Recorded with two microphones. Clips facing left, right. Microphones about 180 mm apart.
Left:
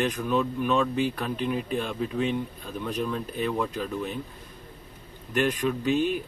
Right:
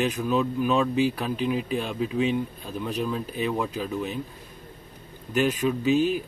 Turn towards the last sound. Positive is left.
turn(degrees=-5)  # may be behind; listen again after turning